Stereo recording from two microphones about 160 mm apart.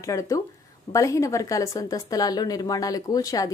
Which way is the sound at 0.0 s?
20° left (ahead or behind).